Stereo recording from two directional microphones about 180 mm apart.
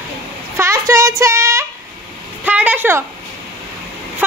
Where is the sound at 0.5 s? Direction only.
15° right (ahead or behind).